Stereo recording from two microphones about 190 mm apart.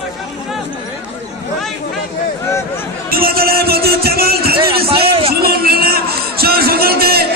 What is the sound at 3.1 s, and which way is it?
Music, 50° right (ahead or behind).